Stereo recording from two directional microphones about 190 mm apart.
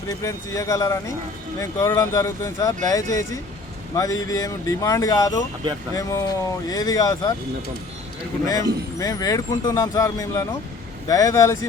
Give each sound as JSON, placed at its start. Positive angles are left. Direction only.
{"t": 0.3, "sound": "speech", "side_deg": 15}
{"t": 8.4, "sound": "speech", "side_deg": 20}